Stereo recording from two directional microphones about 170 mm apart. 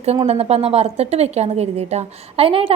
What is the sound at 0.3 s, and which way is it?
A woman's voice, 35° right (ahead or behind).